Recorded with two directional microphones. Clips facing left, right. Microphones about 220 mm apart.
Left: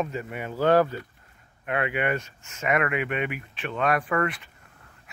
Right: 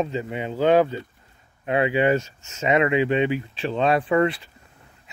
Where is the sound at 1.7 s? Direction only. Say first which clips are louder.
Right 7 dB; 30° right (ahead or behind).